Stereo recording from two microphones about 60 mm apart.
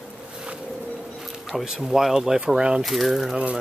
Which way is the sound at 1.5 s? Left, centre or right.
Centre.